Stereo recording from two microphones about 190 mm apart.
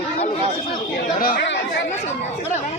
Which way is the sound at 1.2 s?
55° left (ahead or behind).